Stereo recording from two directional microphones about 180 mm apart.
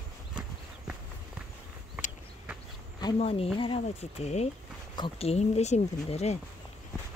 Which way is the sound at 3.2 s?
30° left (ahead or behind).